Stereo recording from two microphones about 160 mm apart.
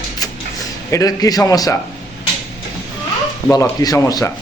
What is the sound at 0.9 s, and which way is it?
Speech, 25° left (ahead or behind).